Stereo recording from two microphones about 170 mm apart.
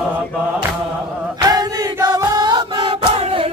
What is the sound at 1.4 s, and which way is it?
Choir, 20° right (ahead or behind).